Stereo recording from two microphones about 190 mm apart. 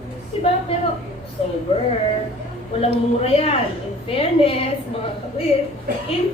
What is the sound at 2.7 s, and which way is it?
A woman's voice, 30° left (ahead or behind).